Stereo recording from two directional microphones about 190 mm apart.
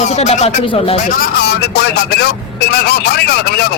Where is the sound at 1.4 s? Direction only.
60° left (ahead or behind).